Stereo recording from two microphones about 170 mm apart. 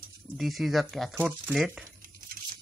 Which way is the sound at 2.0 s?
55° right (ahead or behind).